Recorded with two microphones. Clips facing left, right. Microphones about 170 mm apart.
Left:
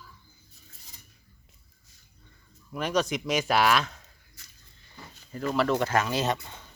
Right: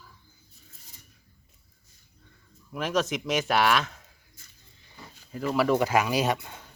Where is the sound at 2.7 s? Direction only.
Centre (ahead or behind).